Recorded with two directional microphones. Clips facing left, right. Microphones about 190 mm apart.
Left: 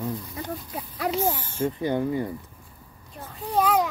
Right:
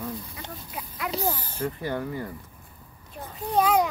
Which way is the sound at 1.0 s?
35° left (ahead or behind).